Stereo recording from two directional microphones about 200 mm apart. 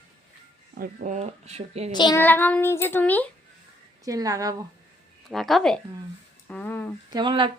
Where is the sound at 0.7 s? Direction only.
45° right (ahead or behind).